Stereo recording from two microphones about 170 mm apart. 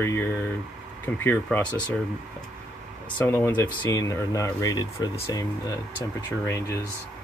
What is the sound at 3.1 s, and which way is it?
Speech, 15° left (ahead or behind).